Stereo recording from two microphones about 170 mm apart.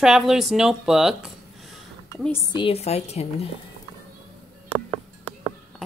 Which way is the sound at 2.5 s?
35° left (ahead or behind).